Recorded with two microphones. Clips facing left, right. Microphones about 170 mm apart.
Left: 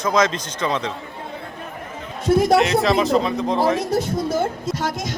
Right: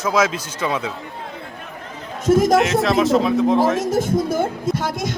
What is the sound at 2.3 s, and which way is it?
Speech, 45° right (ahead or behind).